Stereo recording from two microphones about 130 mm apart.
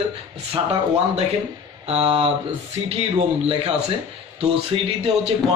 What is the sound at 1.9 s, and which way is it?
Speech, 50° right (ahead or behind).